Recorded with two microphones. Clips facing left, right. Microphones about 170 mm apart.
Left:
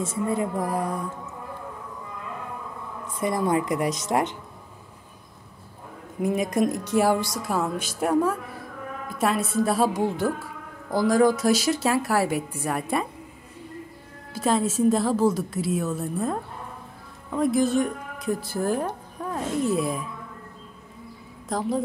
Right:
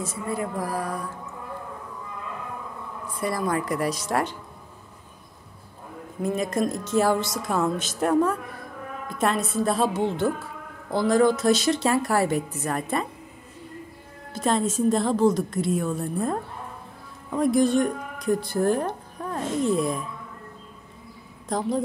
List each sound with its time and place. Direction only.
0.0 s a woman's voice: 25° left (ahead or behind)
3.2 s a woman's voice: 20° left (ahead or behind)
6.2 s a woman's voice: 15° left (ahead or behind)
14.3 s a woman's voice: 5° left (ahead or behind)
21.5 s a woman's voice: centre (ahead or behind)